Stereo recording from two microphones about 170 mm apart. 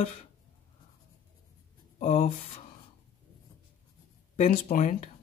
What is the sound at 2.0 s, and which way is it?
Speech, 40° left (ahead or behind).